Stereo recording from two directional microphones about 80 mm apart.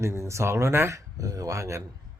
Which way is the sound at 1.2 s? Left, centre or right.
Right.